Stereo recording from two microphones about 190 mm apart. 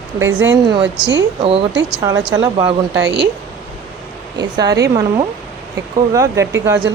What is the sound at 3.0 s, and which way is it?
Speech, 65° right (ahead or behind).